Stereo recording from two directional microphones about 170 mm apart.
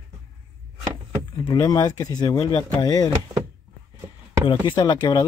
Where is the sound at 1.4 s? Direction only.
20° left (ahead or behind).